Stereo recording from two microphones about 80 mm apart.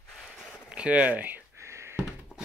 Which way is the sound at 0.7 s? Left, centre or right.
Centre.